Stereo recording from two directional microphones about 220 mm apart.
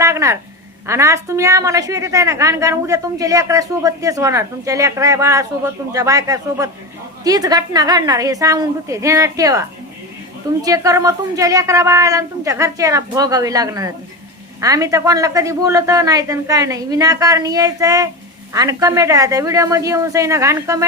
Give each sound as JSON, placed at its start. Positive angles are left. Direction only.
{"t": 0.0, "sound": "a woman's voice", "side_deg": -15}